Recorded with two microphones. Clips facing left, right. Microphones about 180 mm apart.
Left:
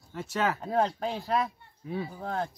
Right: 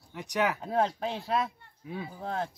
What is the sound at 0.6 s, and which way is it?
Speech, centre (ahead or behind).